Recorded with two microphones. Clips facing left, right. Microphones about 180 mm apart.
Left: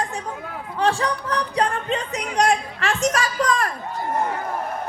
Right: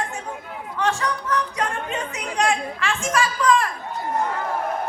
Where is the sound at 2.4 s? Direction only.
40° left (ahead or behind).